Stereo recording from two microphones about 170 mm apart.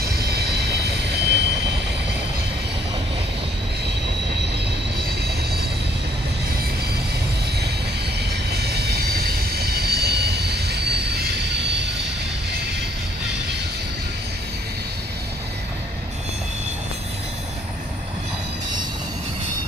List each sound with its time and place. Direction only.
0.0 s train: 65° right (ahead or behind)
1.2 s train: 85° right
8.5 s train: 70° right (ahead or behind); by 11.9 s 90° right